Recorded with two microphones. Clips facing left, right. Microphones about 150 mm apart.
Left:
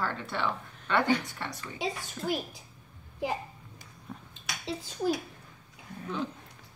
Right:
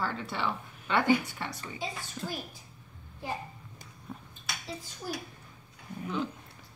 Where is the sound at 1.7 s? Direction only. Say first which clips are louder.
Left 4 dB; 90° left.